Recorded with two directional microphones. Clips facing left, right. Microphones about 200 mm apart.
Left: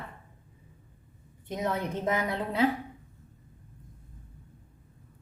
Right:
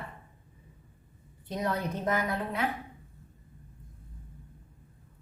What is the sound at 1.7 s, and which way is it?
Speech, 20° left (ahead or behind).